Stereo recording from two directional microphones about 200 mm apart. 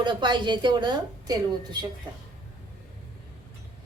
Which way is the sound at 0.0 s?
20° right (ahead or behind).